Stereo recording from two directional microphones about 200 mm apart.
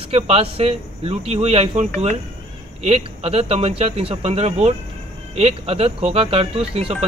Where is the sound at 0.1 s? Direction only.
30° right (ahead or behind).